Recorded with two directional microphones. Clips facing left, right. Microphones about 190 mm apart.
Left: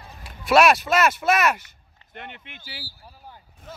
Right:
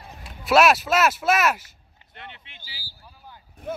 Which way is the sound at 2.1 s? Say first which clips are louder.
Left 4 dB; 55° left (ahead or behind).